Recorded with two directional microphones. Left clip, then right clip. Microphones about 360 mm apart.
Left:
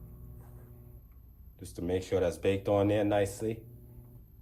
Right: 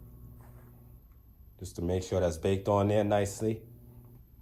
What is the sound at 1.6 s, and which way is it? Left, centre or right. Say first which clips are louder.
Speech: even; centre.